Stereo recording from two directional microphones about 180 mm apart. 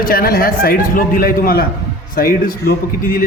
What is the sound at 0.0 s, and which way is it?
A man's voice, 55° left (ahead or behind).